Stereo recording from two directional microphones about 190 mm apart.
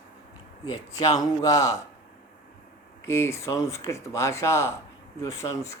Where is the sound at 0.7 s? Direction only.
20° left (ahead or behind).